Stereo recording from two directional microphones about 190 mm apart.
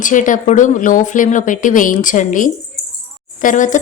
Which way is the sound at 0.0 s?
45° left (ahead or behind).